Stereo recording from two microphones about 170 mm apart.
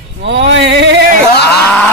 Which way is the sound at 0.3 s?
90° right.